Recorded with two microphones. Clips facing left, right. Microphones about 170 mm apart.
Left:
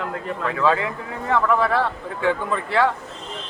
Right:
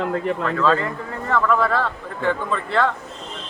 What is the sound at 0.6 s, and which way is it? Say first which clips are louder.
Speech: left 1 dB; 10° left (ahead or behind).